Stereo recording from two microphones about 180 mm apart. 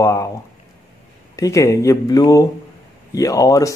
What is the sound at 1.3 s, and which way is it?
Speech, 20° left (ahead or behind).